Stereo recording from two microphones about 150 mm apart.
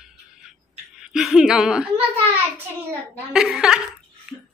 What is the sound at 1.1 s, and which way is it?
Speech, 5° right (ahead or behind).